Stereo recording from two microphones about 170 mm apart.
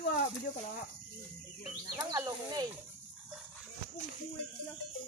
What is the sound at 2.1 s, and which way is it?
Speech, 20° right (ahead or behind).